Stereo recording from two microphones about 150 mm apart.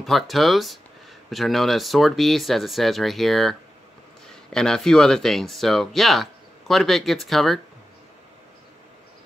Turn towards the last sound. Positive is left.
turn(degrees=0)  # may be behind; listen again after turning